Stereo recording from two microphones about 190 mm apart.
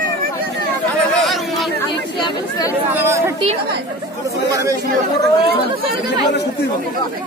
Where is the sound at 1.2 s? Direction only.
Centre (ahead or behind).